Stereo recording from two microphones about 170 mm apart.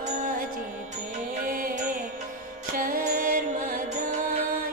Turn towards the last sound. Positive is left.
turn(degrees=-55)  # may be behind; listen again after turning